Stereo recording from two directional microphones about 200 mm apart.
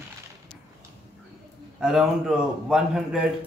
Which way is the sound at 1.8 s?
5° right (ahead or behind).